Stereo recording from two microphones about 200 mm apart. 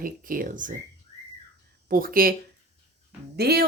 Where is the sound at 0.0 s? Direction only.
45° right (ahead or behind).